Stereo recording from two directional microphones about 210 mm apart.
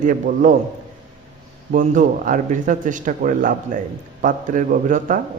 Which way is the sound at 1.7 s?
40° right (ahead or behind).